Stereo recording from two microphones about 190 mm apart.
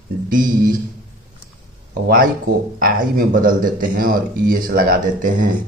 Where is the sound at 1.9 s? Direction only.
50° right (ahead or behind).